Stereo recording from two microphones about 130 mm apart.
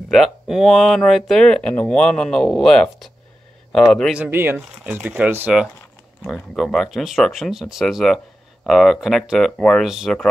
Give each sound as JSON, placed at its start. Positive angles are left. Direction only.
{"t": 0.1, "sound": "speech", "side_deg": 0}
{"t": 4.1, "sound": "speech", "side_deg": -15}
{"t": 6.2, "sound": "speech", "side_deg": 5}